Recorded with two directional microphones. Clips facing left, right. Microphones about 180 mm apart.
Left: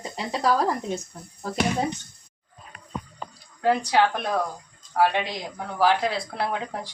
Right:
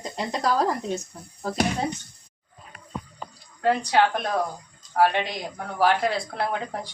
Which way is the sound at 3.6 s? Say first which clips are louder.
Even; 5° left (ahead or behind).